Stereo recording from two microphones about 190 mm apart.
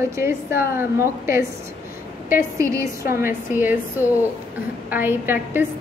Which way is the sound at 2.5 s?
15° right (ahead or behind).